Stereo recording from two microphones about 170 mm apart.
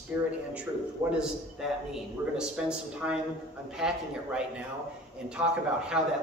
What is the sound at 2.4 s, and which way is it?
Speech, 5° right (ahead or behind).